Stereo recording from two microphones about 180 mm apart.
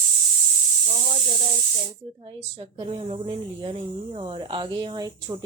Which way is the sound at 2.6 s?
30° right (ahead or behind).